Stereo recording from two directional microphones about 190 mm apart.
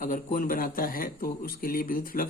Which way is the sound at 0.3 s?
50° left (ahead or behind).